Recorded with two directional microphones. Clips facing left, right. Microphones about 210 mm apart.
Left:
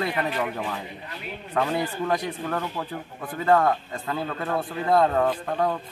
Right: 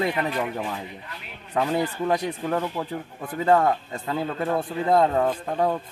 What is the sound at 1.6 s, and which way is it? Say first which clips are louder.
Speech: right 2 dB; 20° right (ahead or behind).